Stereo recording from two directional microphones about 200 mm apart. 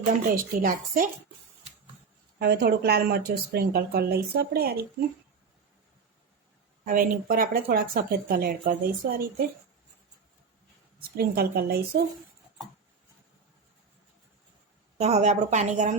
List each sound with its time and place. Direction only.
0.0 s speech: 45° right (ahead or behind)
2.4 s speech: 55° right (ahead or behind)
7.3 s speech: 45° right (ahead or behind)
11.2 s speech: 50° right (ahead or behind)
14.9 s a woman's voice: 35° right (ahead or behind)